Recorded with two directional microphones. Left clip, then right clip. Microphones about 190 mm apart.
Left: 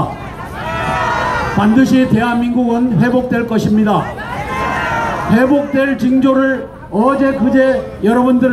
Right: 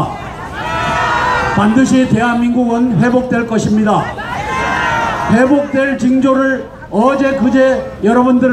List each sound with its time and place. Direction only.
0.7 s a sound: 50° left (ahead or behind)
1.6 s a man's voice: 35° right (ahead or behind)
4.6 s run: 55° left (ahead or behind)
5.3 s a man's voice: 35° right (ahead or behind)